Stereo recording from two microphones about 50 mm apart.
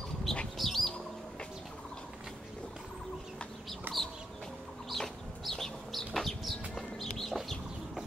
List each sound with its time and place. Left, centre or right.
0.6 s bird: centre
3.9 s chicken: right
4.8 s chicken: centre